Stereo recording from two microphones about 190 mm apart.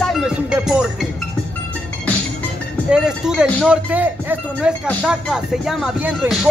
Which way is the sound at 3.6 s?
5° right (ahead or behind).